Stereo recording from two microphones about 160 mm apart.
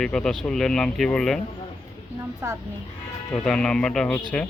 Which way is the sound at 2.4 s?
15° right (ahead or behind).